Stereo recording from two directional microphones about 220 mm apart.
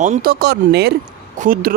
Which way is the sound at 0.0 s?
35° right (ahead or behind).